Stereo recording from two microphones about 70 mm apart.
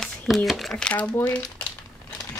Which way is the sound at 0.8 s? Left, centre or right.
Left.